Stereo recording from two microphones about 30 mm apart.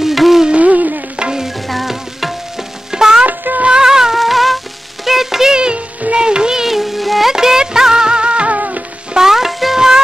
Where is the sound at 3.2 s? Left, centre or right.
Right.